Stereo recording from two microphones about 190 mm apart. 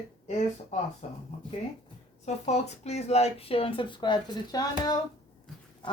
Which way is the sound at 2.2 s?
35° left (ahead or behind).